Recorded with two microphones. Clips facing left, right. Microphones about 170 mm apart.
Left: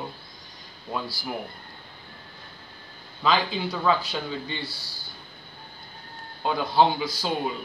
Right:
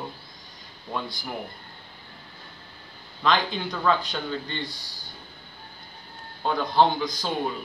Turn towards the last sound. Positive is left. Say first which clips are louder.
# even
turn(degrees=5)  # may be behind; listen again after turning